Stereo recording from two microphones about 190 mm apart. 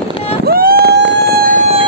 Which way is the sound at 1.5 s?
40° right (ahead or behind).